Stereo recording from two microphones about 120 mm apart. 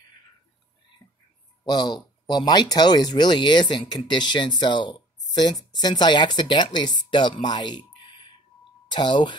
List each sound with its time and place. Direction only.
1.7 s speech: 35° left (ahead or behind)
7.4 s a sound: 40° left (ahead or behind)
8.9 s speech: 40° left (ahead or behind)